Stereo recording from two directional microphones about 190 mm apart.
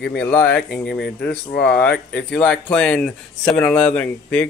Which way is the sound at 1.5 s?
60° left (ahead or behind).